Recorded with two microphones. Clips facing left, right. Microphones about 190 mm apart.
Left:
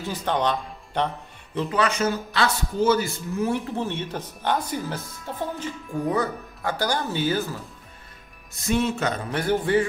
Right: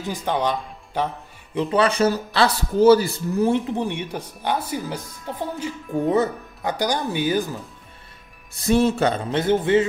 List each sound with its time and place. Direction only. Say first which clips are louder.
0.0 s speech: right 1 dB; 10° right (ahead or behind)
1.7 s speech: right 5 dB; 30° right (ahead or behind)
3.5 s speech: right 4 dB; 15° right (ahead or behind)
8.6 s a man's voice: right 5 dB; 35° right (ahead or behind)